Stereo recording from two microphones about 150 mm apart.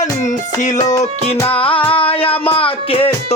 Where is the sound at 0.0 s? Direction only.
55° left (ahead or behind).